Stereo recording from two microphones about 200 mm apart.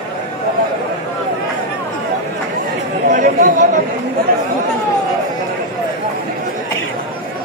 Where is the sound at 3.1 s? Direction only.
40° right (ahead or behind).